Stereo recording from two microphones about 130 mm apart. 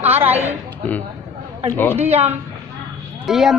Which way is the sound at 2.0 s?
55° right (ahead or behind).